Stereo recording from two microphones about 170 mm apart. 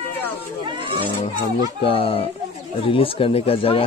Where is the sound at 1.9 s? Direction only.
30° left (ahead or behind).